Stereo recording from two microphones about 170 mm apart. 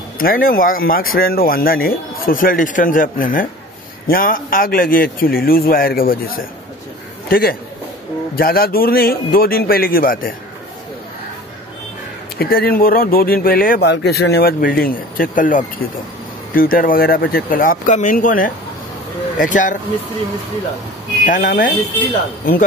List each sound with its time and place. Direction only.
0.2 s a man's voice: 55° left (ahead or behind)
12.4 s speech: 60° left (ahead or behind)
21.3 s speech: 50° left (ahead or behind)